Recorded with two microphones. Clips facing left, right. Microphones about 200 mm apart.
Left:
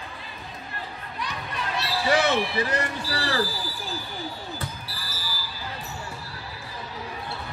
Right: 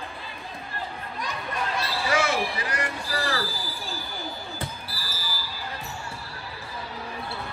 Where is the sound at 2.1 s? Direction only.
35° left (ahead or behind).